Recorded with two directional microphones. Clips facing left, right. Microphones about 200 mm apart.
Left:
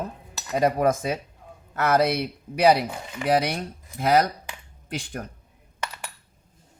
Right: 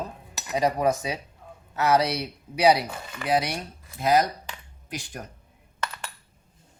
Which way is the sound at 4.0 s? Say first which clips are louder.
Left 1 dB; 55° left (ahead or behind).